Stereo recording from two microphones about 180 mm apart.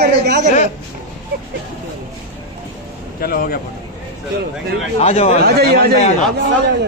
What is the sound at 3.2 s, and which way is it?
Speech, 55° left (ahead or behind).